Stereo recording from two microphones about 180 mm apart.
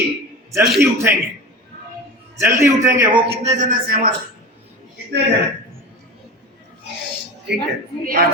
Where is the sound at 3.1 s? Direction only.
35° right (ahead or behind); by 4.1 s 55° right (ahead or behind).